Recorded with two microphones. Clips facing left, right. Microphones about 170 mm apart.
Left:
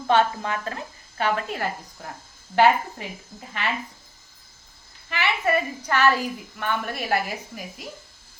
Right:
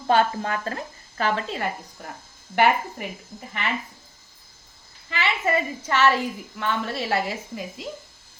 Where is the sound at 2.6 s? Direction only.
15° right (ahead or behind).